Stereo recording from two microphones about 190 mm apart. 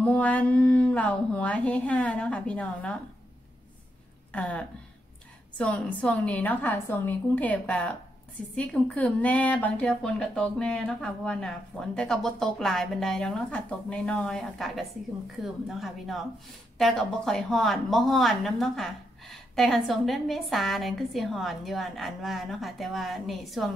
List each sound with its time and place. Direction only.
0.0 s speech: 5° left (ahead or behind)
4.3 s a woman's voice: 5° left (ahead or behind)